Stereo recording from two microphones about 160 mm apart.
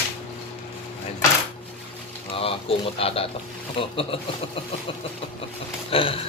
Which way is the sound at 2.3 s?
35° left (ahead or behind).